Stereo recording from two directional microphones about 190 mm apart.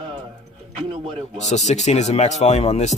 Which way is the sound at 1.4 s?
35° left (ahead or behind).